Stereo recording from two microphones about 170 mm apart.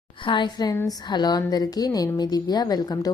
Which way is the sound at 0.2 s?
30° left (ahead or behind).